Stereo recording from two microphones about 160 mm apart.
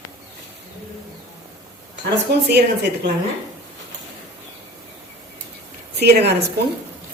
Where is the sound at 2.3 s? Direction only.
90° right.